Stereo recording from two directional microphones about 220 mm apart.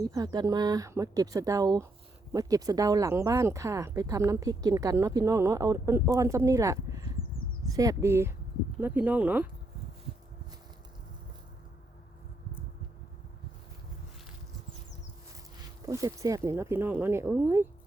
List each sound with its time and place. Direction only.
0.0 s speech: 15° right (ahead or behind)
15.9 s speech: 15° right (ahead or behind)